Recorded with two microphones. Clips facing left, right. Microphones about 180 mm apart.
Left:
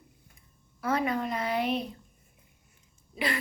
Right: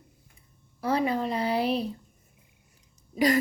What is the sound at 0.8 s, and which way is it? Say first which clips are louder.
Speech: right 3 dB; 30° right (ahead or behind).